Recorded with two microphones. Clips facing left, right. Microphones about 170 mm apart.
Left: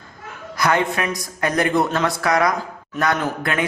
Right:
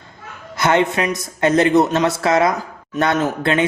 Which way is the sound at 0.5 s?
25° right (ahead or behind).